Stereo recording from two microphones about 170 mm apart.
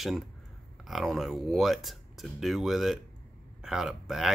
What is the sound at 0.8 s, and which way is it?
Speech, centre (ahead or behind).